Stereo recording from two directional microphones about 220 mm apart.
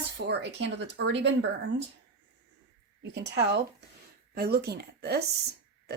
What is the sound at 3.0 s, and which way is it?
Speech, 50° right (ahead or behind).